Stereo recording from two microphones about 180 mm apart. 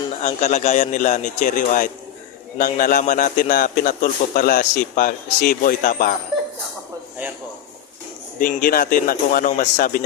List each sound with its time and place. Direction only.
0.2 s a man's voice: 40° left (ahead or behind)
8.4 s a man's voice: 50° left (ahead or behind)